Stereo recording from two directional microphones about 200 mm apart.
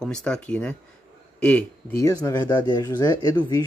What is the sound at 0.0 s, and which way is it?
Speech, 5° left (ahead or behind).